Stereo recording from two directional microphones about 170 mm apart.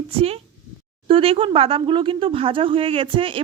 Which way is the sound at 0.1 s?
35° right (ahead or behind).